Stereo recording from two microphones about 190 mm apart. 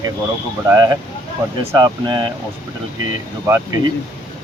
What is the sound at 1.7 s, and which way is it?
Speech, 20° right (ahead or behind).